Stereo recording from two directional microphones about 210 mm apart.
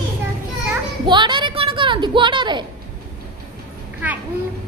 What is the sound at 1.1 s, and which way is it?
A woman's voice, 20° right (ahead or behind).